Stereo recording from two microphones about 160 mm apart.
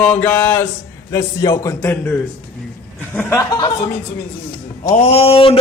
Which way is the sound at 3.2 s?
15° left (ahead or behind).